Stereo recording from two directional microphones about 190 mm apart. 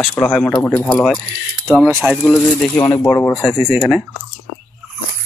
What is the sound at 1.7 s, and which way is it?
Speech, 5° right (ahead or behind).